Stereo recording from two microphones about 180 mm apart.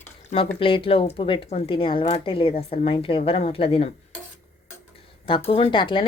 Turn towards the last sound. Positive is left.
turn(degrees=25)  # may be behind; listen again after turning